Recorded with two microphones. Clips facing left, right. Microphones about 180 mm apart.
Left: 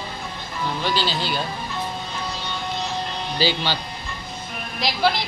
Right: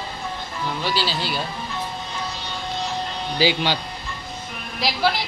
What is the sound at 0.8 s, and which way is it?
Speech, 5° right (ahead or behind).